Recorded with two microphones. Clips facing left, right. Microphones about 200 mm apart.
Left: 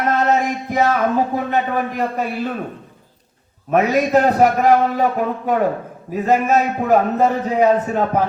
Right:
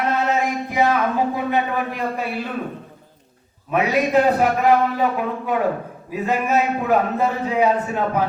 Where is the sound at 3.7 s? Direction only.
45° left (ahead or behind).